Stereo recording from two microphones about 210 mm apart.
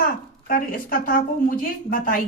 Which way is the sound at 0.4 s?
40° left (ahead or behind).